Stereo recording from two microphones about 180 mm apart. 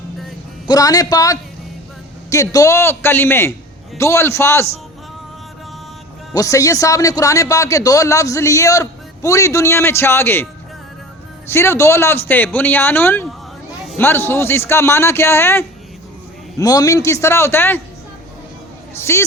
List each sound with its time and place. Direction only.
0.7 s a man's voice: 20° left (ahead or behind)
6.3 s a man's voice: 20° left (ahead or behind)
11.4 s a man's voice: 15° left (ahead or behind)
18.9 s a man's voice: 15° left (ahead or behind)